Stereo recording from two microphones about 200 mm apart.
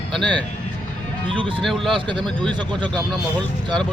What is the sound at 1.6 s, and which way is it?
Speech, centre (ahead or behind).